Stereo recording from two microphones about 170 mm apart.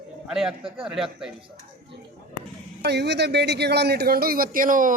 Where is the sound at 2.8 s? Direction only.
80° right; by 4.9 s 50° right (ahead or behind).